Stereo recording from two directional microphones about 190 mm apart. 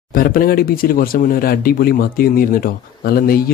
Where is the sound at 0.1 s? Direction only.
50° left (ahead or behind).